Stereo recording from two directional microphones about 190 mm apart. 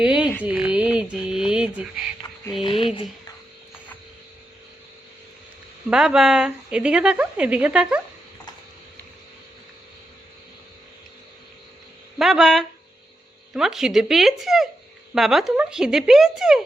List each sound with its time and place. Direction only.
0.0 s a sound: 5° right (ahead or behind)
0.4 s speech: 5° right (ahead or behind)
2.3 s a sound: 15° left (ahead or behind)
2.6 s speech: 25° left (ahead or behind)
5.9 s a woman's voice: 5° right (ahead or behind)
12.2 s a woman's voice: centre (ahead or behind)